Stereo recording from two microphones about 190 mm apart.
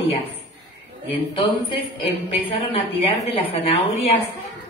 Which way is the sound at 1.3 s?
30° left (ahead or behind).